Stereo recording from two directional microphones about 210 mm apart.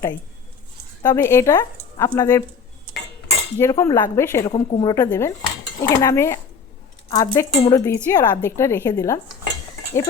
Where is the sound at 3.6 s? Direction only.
15° left (ahead or behind).